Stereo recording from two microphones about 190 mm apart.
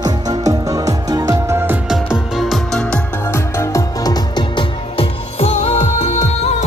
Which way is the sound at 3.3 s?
15° left (ahead or behind).